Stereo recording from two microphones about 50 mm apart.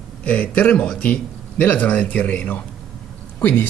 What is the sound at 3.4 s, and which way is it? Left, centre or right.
Speech, left.